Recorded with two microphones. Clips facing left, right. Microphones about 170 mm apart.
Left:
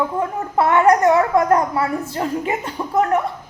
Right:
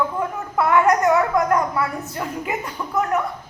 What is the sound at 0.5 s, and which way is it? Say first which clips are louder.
A child's voice: left 3 dB; 25° left (ahead or behind).